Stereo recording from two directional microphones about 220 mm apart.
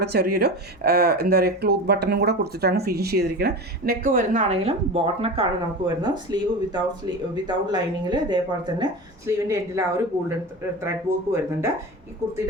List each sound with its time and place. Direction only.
0.0 s speech: 45° right (ahead or behind); by 11.7 s 10° right (ahead or behind)